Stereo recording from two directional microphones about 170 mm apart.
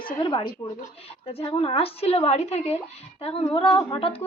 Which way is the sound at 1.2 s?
35° left (ahead or behind).